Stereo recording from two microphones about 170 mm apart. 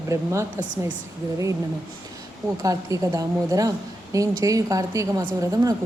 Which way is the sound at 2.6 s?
20° right (ahead or behind).